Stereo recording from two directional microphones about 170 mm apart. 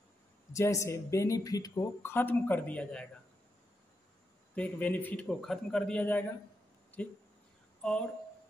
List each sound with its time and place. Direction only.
0.5 s speech: 20° left (ahead or behind)
4.6 s speech: 10° left (ahead or behind)
7.8 s speech: 5° left (ahead or behind)